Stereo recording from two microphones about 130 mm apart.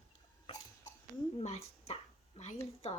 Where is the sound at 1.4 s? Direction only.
55° left (ahead or behind).